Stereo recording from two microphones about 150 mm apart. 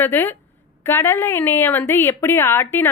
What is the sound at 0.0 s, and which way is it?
A woman's voice, 15° left (ahead or behind).